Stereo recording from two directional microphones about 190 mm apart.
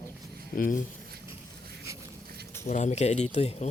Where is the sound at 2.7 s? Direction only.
40° left (ahead or behind).